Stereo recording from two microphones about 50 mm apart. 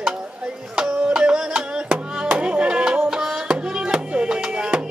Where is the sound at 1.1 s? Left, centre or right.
Centre.